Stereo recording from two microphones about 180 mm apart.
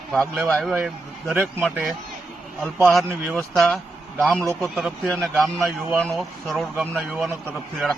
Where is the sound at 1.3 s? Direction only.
10° right (ahead or behind).